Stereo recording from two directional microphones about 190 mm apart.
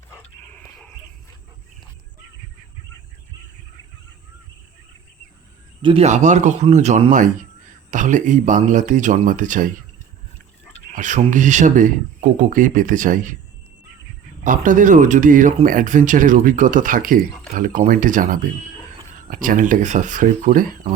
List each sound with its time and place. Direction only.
0.4 s a sound: 10° left (ahead or behind)
5.8 s speech: 30° right (ahead or behind)
10.9 s speech: 40° right (ahead or behind)
14.4 s speech: 45° right (ahead or behind)